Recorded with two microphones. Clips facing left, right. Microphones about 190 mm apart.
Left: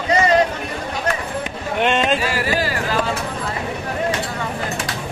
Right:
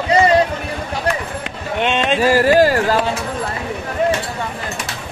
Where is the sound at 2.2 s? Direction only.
45° right (ahead or behind).